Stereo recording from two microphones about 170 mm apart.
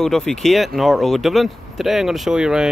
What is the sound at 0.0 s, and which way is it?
Speech, centre (ahead or behind).